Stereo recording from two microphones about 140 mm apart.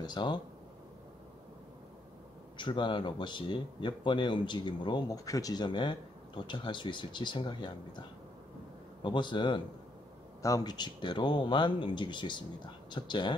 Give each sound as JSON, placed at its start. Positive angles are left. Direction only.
{"t": 0.0, "sound": "speech", "side_deg": 35}
{"t": 2.5, "sound": "speech", "side_deg": 35}
{"t": 9.0, "sound": "speech", "side_deg": 35}